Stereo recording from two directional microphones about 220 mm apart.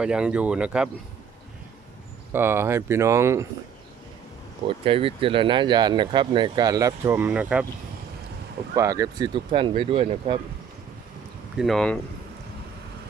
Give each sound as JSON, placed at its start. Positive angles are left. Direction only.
{"t": 0.0, "sound": "speech", "side_deg": -5}
{"t": 2.3, "sound": "speech", "side_deg": -10}
{"t": 4.6, "sound": "speech", "side_deg": -25}
{"t": 8.7, "sound": "speech", "side_deg": -15}
{"t": 11.5, "sound": "speech", "side_deg": 0}